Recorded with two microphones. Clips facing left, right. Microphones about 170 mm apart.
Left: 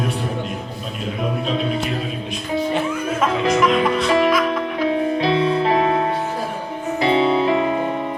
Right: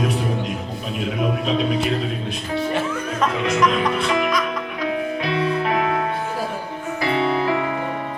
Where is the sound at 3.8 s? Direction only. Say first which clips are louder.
Left 4 dB; 30° left (ahead or behind).